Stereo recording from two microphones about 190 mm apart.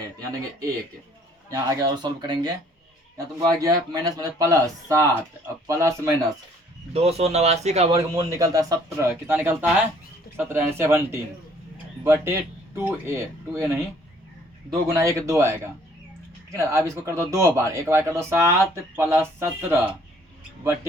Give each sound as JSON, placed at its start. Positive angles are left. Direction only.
{"t": 0.0, "sound": "speech", "side_deg": -20}
{"t": 6.9, "sound": "speech", "side_deg": -35}
{"t": 7.9, "sound": "speech", "side_deg": -20}
{"t": 14.9, "sound": "speech", "side_deg": -15}